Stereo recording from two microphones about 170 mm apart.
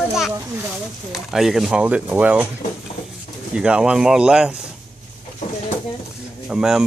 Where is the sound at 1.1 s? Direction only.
Centre (ahead or behind).